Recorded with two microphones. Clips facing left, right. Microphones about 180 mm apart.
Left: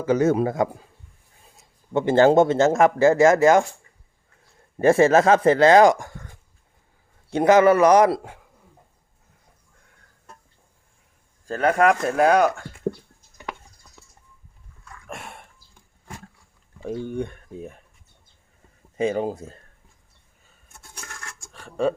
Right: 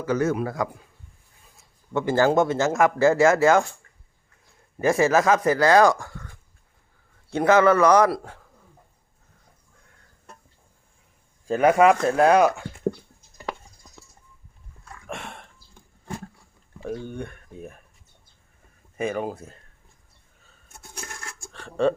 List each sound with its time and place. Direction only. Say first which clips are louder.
0.0 s speech: left 4 dB; 20° left (ahead or behind)
4.8 s speech: left 4 dB; 30° left (ahead or behind)
7.3 s a man's voice: left 2 dB; 20° left (ahead or behind)
11.4 s speech: right 2 dB; 10° right (ahead or behind)
15.0 s a sound: right 2 dB; centre (ahead or behind)
16.8 s speech: left 4 dB; 15° left (ahead or behind)
18.9 s speech: left 4 dB; 25° left (ahead or behind)
21.5 s a sound: right 1 dB; 10° left (ahead or behind)